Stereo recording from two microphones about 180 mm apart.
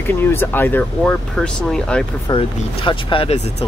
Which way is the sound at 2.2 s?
30° left (ahead or behind).